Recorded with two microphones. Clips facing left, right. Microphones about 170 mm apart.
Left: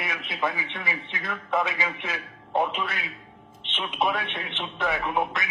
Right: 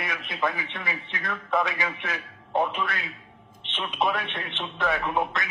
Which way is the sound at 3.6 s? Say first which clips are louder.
Even; 15° left (ahead or behind).